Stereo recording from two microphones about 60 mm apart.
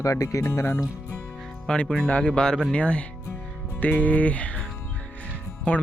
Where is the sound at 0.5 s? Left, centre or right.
Left.